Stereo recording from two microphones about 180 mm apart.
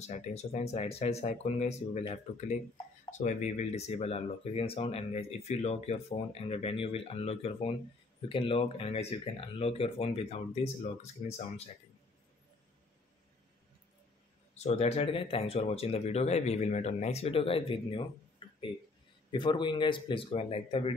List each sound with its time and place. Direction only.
0.0 s speech: 40° left (ahead or behind)
14.5 s speech: 35° left (ahead or behind)
18.4 s a sound: 25° left (ahead or behind)
19.3 s a man's voice: 25° left (ahead or behind)